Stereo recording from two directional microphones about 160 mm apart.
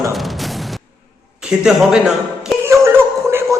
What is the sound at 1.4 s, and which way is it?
Speech, 5° right (ahead or behind).